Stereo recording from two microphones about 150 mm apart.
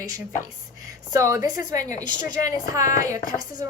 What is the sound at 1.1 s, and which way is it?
Speech, 20° right (ahead or behind).